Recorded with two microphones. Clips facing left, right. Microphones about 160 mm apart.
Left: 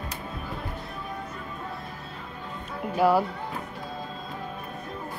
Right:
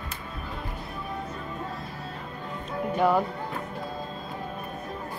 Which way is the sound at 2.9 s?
5° left (ahead or behind).